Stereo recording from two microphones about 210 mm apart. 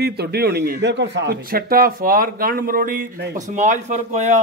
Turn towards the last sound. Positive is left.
turn(degrees=-35)  # may be behind; listen again after turning